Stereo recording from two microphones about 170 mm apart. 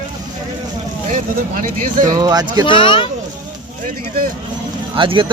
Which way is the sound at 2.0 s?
25° right (ahead or behind).